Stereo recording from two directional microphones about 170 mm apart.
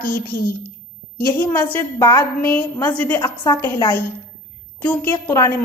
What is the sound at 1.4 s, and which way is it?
A woman's voice, 10° left (ahead or behind).